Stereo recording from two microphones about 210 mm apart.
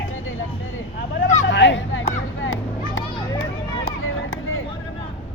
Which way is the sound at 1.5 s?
60° left (ahead or behind).